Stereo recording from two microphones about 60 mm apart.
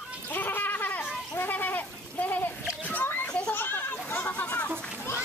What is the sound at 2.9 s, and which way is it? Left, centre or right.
Children playing, left.